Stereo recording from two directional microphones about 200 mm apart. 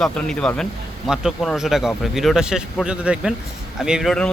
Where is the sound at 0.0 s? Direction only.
5° left (ahead or behind).